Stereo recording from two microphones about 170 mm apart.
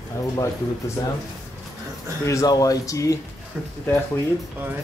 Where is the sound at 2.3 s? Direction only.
20° left (ahead or behind).